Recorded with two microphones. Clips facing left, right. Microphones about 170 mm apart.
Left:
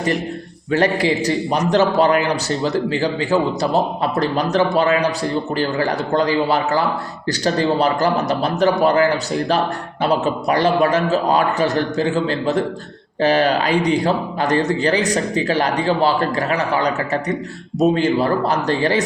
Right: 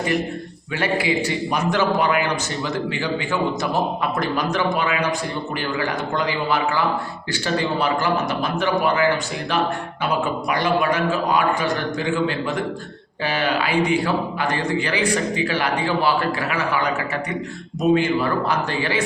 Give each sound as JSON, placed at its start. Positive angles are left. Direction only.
{"t": 0.7, "sound": "a man's voice", "side_deg": 40}